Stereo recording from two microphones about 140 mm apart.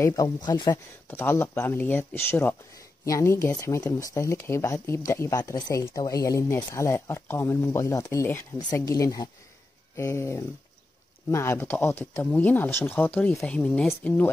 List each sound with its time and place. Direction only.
0.0 s speech: 25° left (ahead or behind)
1.0 s speech: 15° left (ahead or behind)